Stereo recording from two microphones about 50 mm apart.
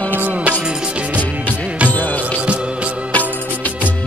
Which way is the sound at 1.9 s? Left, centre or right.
Left.